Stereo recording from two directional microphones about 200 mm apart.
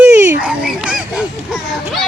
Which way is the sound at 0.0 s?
5° right (ahead or behind).